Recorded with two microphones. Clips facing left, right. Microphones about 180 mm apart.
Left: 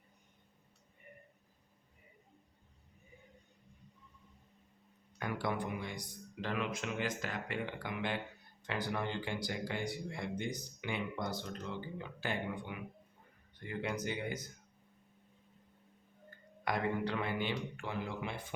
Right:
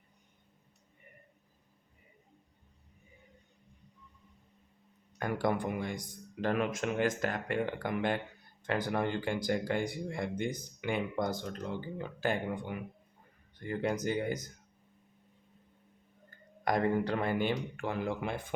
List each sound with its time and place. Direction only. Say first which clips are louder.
5.2 s speech: right 5 dB; 45° right (ahead or behind)
16.6 s speech: right 5 dB; 45° right (ahead or behind)